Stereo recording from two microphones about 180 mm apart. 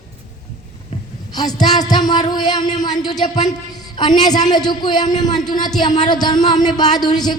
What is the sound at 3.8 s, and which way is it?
A man's voice, 25° left (ahead or behind).